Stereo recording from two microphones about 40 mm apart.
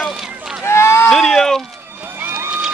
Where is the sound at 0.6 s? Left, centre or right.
Left.